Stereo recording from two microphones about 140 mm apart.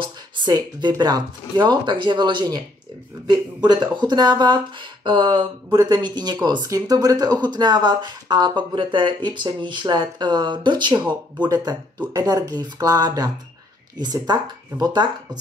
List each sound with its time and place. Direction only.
0.0 s speech: 30° right (ahead or behind)